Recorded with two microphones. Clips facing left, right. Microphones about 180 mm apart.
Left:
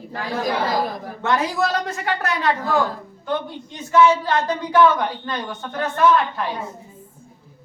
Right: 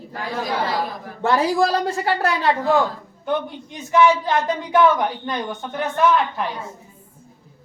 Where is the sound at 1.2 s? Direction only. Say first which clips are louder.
Right 3 dB; 30° right (ahead or behind).